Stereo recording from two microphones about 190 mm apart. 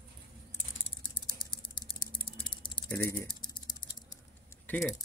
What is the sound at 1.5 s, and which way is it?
Typing, 25° left (ahead or behind).